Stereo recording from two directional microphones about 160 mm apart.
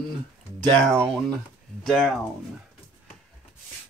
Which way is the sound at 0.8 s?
5° left (ahead or behind).